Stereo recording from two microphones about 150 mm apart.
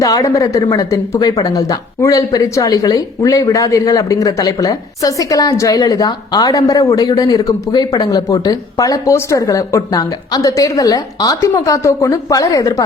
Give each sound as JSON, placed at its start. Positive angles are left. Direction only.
{"t": 0.0, "sound": "speech", "side_deg": 25}